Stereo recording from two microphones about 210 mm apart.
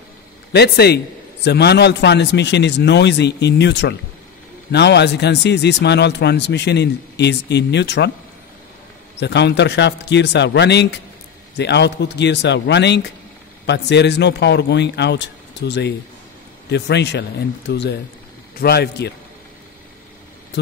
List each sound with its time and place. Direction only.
0.5 s speech: 50° left (ahead or behind)
9.2 s a man's voice: 55° left (ahead or behind)